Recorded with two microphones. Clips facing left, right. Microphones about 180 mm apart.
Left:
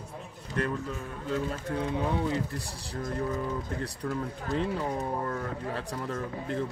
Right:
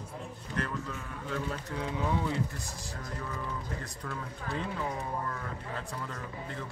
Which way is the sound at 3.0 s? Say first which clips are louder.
Left 9 dB; 45° left (ahead or behind).